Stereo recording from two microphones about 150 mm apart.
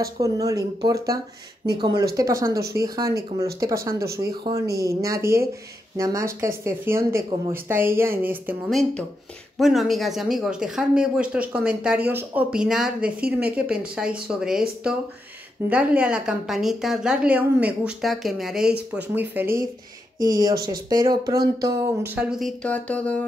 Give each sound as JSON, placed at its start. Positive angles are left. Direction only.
{"t": 0.0, "sound": "speech", "side_deg": -20}
{"t": 2.5, "sound": "a woman's voice", "side_deg": -90}
{"t": 2.8, "sound": "a woman's voice", "side_deg": -25}
{"t": 8.6, "sound": "a woman's voice", "side_deg": 0}
{"t": 20.2, "sound": "a woman's voice", "side_deg": -25}
{"t": 22.6, "sound": "a sound", "side_deg": 10}